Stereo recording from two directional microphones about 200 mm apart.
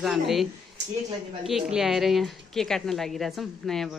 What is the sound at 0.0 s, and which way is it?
A woman's voice, centre (ahead or behind).